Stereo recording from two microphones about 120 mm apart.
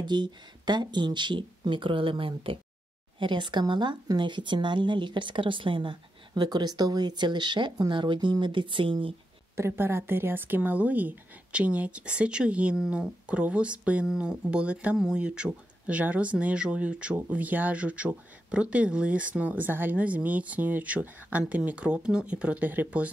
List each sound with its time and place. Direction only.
0.0 s speech: 40° right (ahead or behind)
9.6 s a woman's voice: 20° right (ahead or behind)